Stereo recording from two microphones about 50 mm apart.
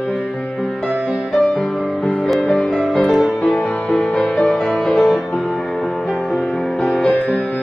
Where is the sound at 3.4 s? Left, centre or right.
Left.